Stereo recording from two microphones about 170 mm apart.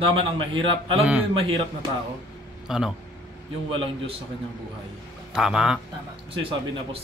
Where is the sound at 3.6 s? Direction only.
30° right (ahead or behind).